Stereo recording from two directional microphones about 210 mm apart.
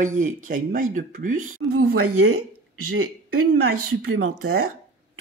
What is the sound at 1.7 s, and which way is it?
Speech, 90° right.